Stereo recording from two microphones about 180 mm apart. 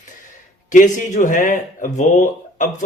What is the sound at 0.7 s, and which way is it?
Speech, 45° left (ahead or behind).